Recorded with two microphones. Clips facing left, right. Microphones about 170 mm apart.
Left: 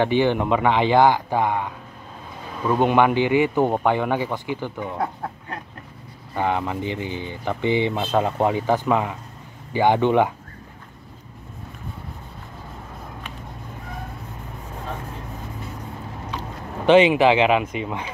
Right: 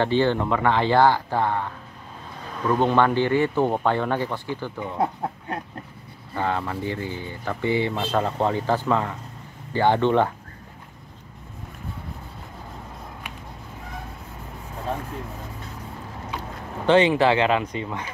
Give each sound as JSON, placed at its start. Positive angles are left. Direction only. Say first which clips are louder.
{"t": 0.0, "sound": "speech", "louder": "left 2 dB", "side_deg": 15}
{"t": 4.9, "sound": "speech", "louder": "right 2 dB", "side_deg": -20}
{"t": 6.3, "sound": "speech", "louder": "left 3 dB", "side_deg": 15}
{"t": 7.9, "sound": "speech", "louder": "left 2 dB", "side_deg": 5}
{"t": 8.2, "sound": "speech", "louder": "left 3 dB", "side_deg": 15}
{"t": 16.8, "sound": "speech", "louder": "left 3 dB", "side_deg": 15}